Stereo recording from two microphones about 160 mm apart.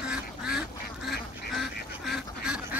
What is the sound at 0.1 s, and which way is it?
Duck, 5° right (ahead or behind).